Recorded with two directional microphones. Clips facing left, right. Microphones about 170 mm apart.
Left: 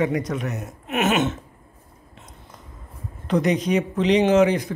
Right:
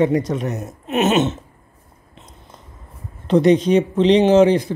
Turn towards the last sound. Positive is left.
turn(degrees=-30)  # may be behind; listen again after turning